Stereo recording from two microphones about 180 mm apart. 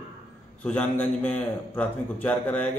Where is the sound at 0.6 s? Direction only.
10° left (ahead or behind).